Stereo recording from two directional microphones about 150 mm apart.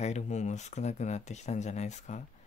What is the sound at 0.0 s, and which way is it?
Speech, 50° left (ahead or behind).